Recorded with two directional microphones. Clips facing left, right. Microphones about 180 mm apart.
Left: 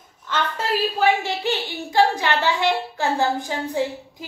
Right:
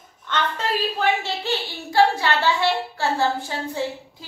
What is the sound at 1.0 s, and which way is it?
A woman's voice, 15° left (ahead or behind).